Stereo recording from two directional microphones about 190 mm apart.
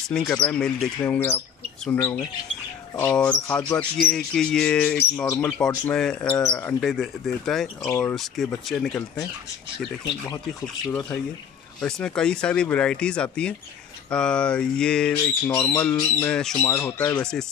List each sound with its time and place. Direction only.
0.1 s speech: 5° left (ahead or behind)
10.9 s speech: 15° left (ahead or behind)
11.8 s speech: 5° left (ahead or behind)
16.6 s speech: 15° left (ahead or behind)
17.2 s speech: 5° left (ahead or behind)